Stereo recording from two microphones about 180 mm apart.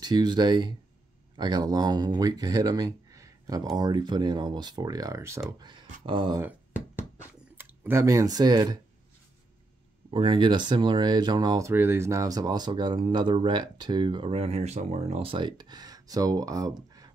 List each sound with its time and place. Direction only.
0.0 s speech: 25° right (ahead or behind)
7.5 s speech: 10° right (ahead or behind)
10.1 s speech: 25° right (ahead or behind)